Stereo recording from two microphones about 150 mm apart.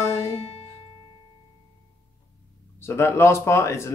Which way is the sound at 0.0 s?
20° left (ahead or behind).